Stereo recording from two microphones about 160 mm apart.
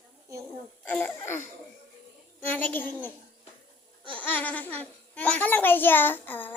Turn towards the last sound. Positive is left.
turn(degrees=10)  # may be behind; listen again after turning